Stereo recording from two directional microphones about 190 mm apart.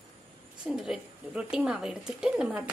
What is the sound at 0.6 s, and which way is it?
A woman's voice, 5° right (ahead or behind).